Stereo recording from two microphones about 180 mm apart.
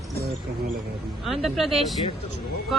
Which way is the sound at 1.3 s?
Centre (ahead or behind).